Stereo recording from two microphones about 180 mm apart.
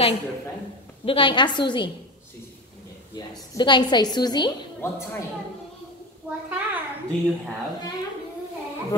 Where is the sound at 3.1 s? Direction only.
25° left (ahead or behind).